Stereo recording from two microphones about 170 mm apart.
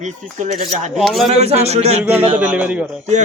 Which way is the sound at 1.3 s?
40° right (ahead or behind).